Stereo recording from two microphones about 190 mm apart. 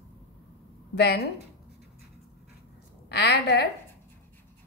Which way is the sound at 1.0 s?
60° left (ahead or behind).